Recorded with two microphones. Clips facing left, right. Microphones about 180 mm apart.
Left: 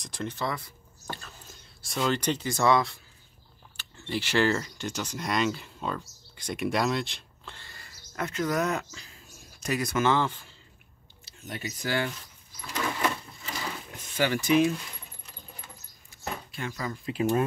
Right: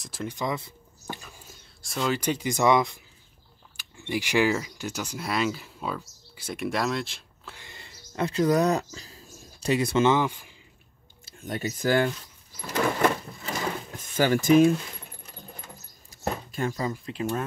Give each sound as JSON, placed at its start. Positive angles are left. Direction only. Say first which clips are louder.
{"t": 0.0, "sound": "speech", "louder": "right 1 dB", "side_deg": -5}
{"t": 1.0, "sound": "a sound", "louder": "right 1 dB", "side_deg": -15}
{"t": 1.8, "sound": "speech", "louder": "even", "side_deg": 0}
{"t": 7.6, "sound": "speech", "louder": "right 3 dB", "side_deg": -20}
{"t": 11.4, "sound": "speech", "louder": "right 7 dB", "side_deg": -45}
{"t": 12.7, "sound": "sewing machine", "louder": "right 6 dB", "side_deg": -50}
{"t": 14.1, "sound": "speech", "louder": "right 4 dB", "side_deg": -45}
{"t": 15.6, "sound": "a sound", "louder": "right 4 dB", "side_deg": -40}
{"t": 16.9, "sound": "speech", "louder": "left 3 dB", "side_deg": 5}